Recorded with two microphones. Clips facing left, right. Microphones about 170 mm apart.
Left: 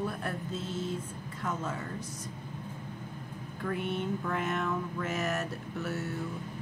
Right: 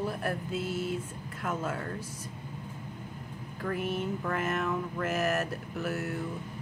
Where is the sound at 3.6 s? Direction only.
5° right (ahead or behind).